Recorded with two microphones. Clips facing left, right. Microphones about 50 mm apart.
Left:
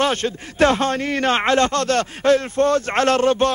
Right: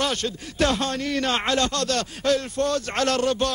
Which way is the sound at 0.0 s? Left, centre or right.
Left.